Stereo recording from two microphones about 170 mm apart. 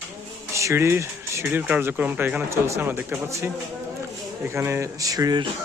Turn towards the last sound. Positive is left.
turn(degrees=-20)  # may be behind; listen again after turning